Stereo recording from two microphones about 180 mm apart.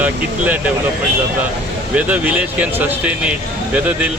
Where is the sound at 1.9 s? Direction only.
10° right (ahead or behind).